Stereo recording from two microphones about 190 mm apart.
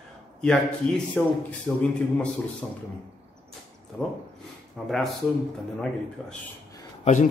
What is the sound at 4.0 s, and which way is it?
Speech, 5° left (ahead or behind).